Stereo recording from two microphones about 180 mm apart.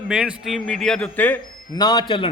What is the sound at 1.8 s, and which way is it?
Speech, 20° left (ahead or behind).